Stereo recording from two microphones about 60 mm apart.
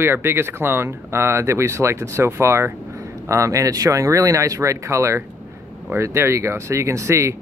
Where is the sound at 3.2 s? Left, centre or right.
Right.